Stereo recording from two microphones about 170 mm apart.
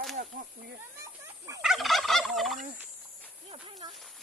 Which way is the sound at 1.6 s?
Centre (ahead or behind).